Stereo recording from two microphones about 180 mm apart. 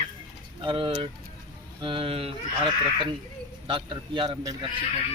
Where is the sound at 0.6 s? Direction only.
25° right (ahead or behind).